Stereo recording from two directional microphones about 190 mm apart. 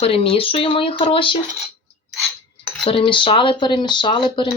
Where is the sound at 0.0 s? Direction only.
30° left (ahead or behind).